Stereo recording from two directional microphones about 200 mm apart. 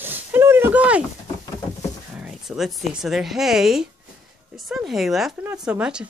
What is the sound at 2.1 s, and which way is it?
Speech, 5° right (ahead or behind).